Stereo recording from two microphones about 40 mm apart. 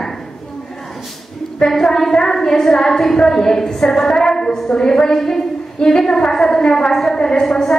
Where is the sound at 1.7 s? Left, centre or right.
Centre.